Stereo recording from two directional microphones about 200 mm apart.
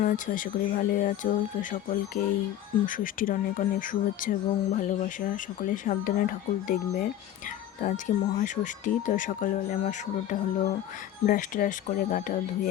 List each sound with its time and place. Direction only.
0.0 s speech: 40° left (ahead or behind)